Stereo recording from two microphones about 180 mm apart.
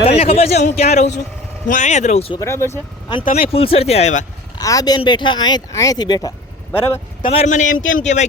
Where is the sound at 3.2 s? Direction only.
55° left (ahead or behind).